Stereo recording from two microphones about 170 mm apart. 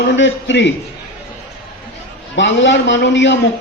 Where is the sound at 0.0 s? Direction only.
90° left.